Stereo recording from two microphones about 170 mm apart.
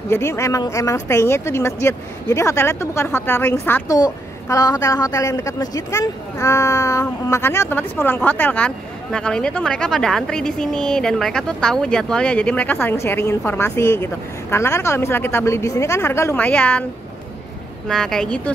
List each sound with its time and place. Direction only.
0.1 s speech: 15° left (ahead or behind)
17.8 s speech: 5° left (ahead or behind)